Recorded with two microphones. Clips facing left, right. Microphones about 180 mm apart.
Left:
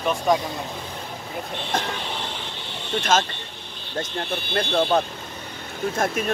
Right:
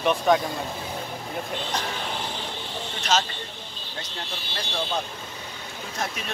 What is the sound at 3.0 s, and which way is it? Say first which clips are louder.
Speech: left 3 dB; 50° left (ahead or behind).